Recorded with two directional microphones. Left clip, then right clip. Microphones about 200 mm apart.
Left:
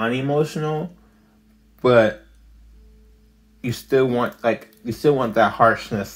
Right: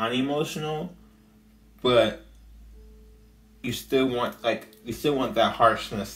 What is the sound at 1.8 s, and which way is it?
Speech, 40° left (ahead or behind).